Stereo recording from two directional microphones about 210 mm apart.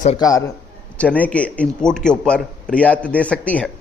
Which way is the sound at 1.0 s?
5° left (ahead or behind).